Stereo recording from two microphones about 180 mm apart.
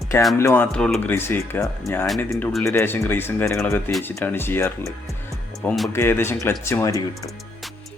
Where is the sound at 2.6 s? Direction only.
15° left (ahead or behind).